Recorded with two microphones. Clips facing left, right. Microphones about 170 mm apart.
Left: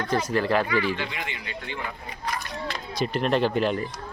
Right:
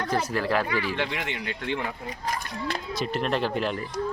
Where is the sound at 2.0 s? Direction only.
45° right (ahead or behind).